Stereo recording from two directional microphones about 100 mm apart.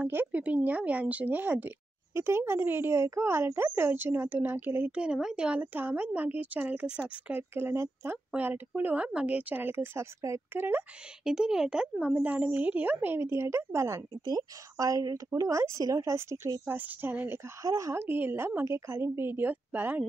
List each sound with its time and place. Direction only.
0.0 s speech: 15° right (ahead or behind)
11.2 s speech: 5° right (ahead or behind); by 16.7 s 30° right (ahead or behind)
16.7 s speech: 15° right (ahead or behind)
17.6 s speech: 30° right (ahead or behind)
18.0 s speech: 20° right (ahead or behind)